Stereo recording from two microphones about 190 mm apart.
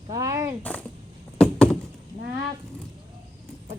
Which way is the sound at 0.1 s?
20° right (ahead or behind).